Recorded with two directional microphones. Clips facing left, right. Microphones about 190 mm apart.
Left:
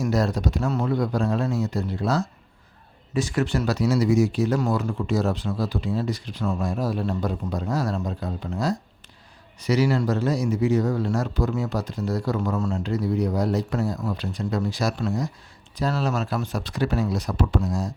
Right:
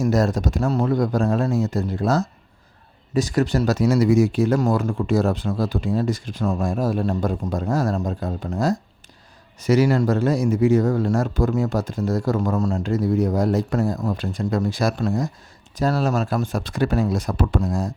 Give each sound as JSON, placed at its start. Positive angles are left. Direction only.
{"t": 0.0, "sound": "speech", "side_deg": -45}